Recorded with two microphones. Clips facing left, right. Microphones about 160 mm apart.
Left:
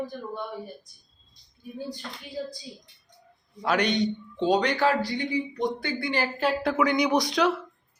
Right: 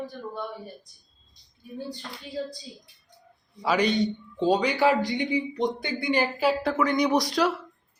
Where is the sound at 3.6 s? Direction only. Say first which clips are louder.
Right 1 dB; 5° right (ahead or behind); by 6.2 s 20° right (ahead or behind).